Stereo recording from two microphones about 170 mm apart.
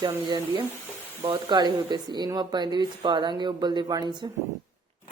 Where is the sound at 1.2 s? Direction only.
25° right (ahead or behind).